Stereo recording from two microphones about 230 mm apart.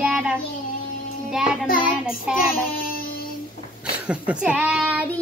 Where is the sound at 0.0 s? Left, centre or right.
Centre.